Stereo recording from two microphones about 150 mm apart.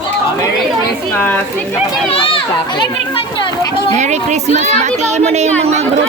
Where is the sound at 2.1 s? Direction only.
35° left (ahead or behind).